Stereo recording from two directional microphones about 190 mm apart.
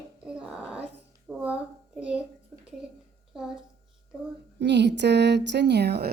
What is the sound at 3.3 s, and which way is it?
Speech, centre (ahead or behind).